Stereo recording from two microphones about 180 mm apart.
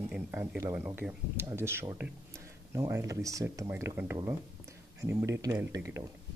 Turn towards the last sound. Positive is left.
turn(degrees=-15)  # may be behind; listen again after turning